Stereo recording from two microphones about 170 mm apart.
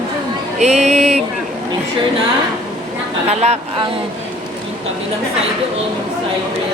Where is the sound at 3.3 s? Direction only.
40° right (ahead or behind).